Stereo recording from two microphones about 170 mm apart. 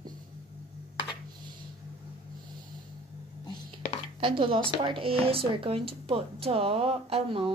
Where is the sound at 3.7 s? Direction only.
30° right (ahead or behind).